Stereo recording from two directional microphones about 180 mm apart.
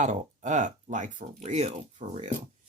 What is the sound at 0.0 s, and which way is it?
Speech, 40° right (ahead or behind).